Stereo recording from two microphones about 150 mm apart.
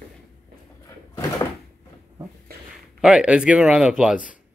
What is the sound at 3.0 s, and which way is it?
Speech, 5° right (ahead or behind).